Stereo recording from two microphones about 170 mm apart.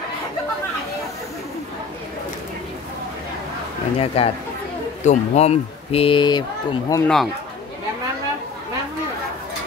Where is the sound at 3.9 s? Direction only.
35° left (ahead or behind).